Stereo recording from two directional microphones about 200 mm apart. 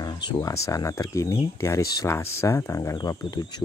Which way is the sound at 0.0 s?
20° left (ahead or behind).